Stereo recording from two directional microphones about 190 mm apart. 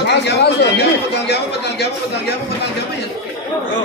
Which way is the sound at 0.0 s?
60° left (ahead or behind).